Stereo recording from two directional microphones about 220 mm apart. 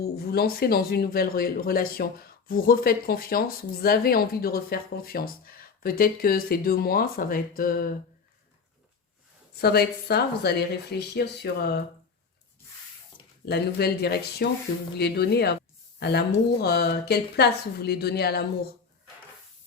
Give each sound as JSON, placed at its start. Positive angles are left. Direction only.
{"t": 0.0, "sound": "speech", "side_deg": 45}
{"t": 9.6, "sound": "speech", "side_deg": 45}
{"t": 13.4, "sound": "speech", "side_deg": 45}